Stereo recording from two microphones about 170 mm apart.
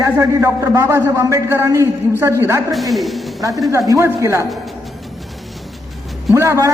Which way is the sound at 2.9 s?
Centre (ahead or behind).